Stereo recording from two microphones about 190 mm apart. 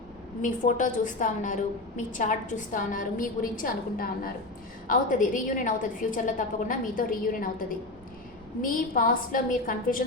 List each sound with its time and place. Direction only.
0.4 s a woman's voice: 40° left (ahead or behind)
8.6 s a woman's voice: 45° left (ahead or behind)